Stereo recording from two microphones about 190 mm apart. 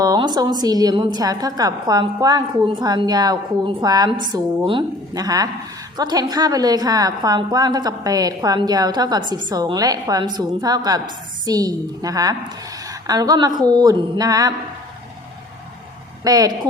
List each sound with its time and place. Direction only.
0.0 s a woman's voice: 20° right (ahead or behind)
16.2 s a woman's voice: 20° right (ahead or behind)